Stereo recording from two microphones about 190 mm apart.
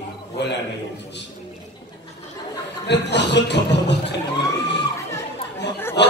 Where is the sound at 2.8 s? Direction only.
65° left (ahead or behind).